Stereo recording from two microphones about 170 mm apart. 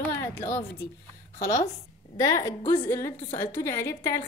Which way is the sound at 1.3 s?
20° left (ahead or behind).